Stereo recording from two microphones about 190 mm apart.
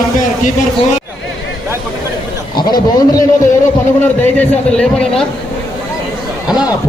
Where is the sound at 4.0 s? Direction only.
10° left (ahead or behind).